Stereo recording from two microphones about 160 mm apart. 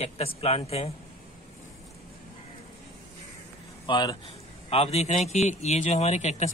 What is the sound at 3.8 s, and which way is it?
Speech, 30° left (ahead or behind).